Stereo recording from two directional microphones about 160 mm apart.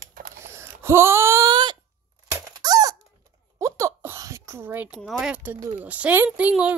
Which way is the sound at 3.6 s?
15° right (ahead or behind).